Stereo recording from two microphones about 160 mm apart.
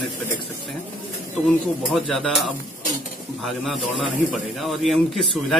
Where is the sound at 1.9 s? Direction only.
Centre (ahead or behind).